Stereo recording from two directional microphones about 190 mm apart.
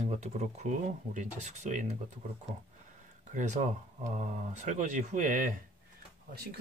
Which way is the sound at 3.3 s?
40° right (ahead or behind).